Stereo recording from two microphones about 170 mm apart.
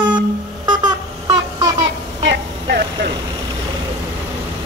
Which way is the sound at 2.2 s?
85° right.